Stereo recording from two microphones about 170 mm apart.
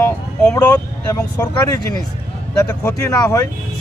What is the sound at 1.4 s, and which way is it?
Speech, 20° left (ahead or behind).